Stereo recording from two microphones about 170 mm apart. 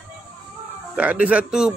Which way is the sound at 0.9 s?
10° right (ahead or behind).